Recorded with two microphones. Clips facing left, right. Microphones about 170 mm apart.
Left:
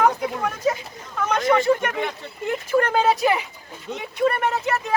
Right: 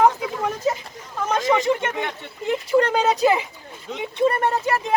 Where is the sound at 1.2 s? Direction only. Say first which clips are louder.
Left 1 dB; 25° right (ahead or behind).